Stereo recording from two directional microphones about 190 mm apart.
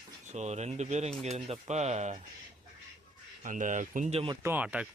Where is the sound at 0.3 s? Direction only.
35° right (ahead or behind).